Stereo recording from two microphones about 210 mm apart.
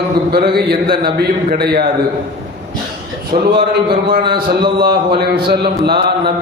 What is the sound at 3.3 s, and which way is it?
A man's voice, 40° right (ahead or behind).